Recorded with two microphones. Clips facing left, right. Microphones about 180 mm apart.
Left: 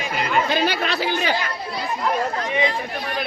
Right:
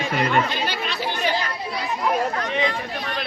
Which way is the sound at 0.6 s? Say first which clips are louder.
Left 4 dB; 90° left.